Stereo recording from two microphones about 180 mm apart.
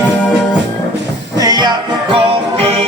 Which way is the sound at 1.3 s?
20° right (ahead or behind).